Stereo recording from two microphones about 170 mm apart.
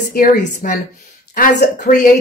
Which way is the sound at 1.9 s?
45° left (ahead or behind).